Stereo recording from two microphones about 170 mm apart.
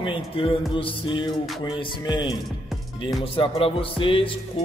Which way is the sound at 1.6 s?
30° left (ahead or behind).